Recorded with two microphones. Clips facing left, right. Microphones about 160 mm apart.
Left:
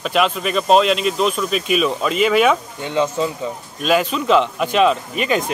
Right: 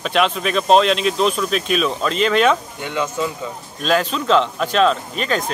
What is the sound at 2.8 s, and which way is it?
Speech, 30° left (ahead or behind).